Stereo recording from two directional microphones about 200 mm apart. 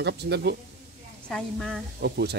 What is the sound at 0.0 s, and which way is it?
Speech, 55° right (ahead or behind).